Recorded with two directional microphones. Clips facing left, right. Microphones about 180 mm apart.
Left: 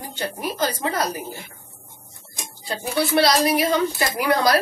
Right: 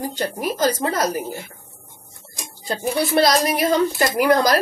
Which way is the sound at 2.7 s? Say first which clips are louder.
Right 2 dB; 45° right (ahead or behind).